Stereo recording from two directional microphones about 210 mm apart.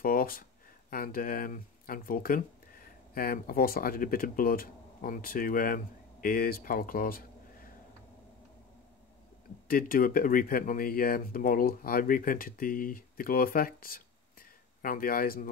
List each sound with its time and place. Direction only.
0.0 s speech: 40° left (ahead or behind)
9.7 s speech: 45° left (ahead or behind)